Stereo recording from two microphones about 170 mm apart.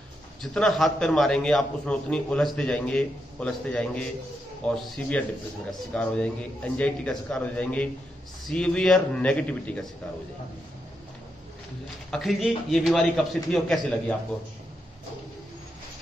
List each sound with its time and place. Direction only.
0.4 s a man's voice: centre (ahead or behind)
12.1 s a man's voice: centre (ahead or behind)